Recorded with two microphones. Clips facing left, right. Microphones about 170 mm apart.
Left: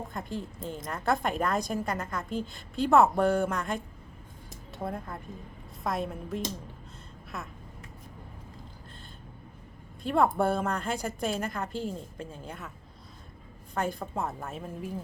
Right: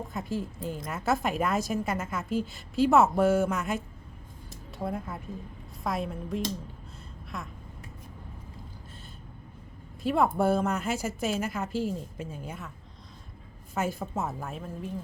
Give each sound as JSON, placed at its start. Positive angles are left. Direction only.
{"t": 0.1, "sound": "a woman's voice", "side_deg": -5}
{"t": 10.0, "sound": "a woman's voice", "side_deg": -5}
{"t": 13.7, "sound": "a woman's voice", "side_deg": -5}